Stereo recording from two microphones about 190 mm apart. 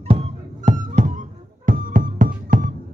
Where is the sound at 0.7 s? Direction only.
40° right (ahead or behind).